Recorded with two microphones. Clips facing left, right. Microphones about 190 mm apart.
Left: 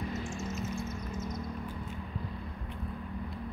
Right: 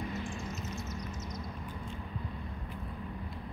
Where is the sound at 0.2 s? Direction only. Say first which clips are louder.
Left 3 dB; 45° left (ahead or behind).